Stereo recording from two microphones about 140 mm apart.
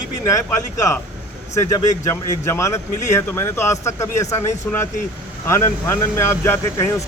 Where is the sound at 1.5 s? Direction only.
20° left (ahead or behind).